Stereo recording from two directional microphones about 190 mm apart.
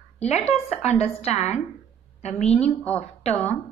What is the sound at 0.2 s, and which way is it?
A woman's voice, 35° left (ahead or behind).